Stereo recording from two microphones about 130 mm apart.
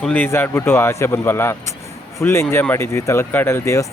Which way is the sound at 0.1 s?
15° left (ahead or behind).